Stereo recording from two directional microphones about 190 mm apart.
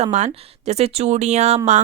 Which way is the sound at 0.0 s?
40° right (ahead or behind).